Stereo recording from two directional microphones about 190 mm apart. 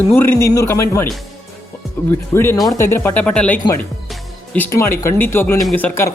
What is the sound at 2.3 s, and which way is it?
Speech, 15° left (ahead or behind).